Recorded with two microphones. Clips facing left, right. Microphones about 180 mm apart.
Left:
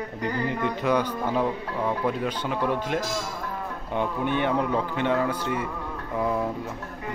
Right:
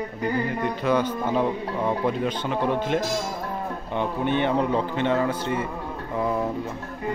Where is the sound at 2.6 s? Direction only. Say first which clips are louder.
Right 2 dB; 25° right (ahead or behind).